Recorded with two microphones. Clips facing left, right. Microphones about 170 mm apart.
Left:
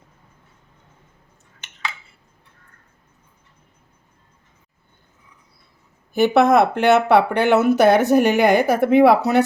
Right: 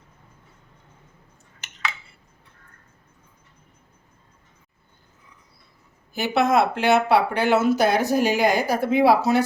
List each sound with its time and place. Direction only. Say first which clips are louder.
6.1 s speech: left 6 dB; 55° left (ahead or behind)